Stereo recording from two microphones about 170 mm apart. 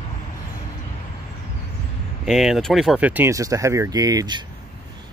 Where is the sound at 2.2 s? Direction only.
Centre (ahead or behind); by 4.4 s 25° right (ahead or behind).